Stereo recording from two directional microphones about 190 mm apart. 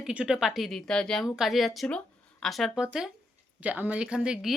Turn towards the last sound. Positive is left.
turn(degrees=-5)  # may be behind; listen again after turning